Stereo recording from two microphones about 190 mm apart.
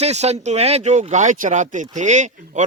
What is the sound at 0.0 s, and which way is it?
Speech, 35° right (ahead or behind).